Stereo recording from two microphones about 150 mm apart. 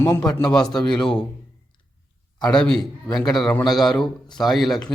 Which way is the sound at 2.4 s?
5° left (ahead or behind).